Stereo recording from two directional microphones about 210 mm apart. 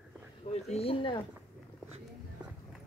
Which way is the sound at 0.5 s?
30° left (ahead or behind).